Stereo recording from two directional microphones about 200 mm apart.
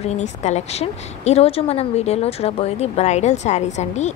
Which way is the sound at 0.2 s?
35° left (ahead or behind).